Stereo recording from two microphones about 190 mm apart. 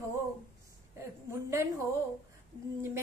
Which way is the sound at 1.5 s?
15° right (ahead or behind).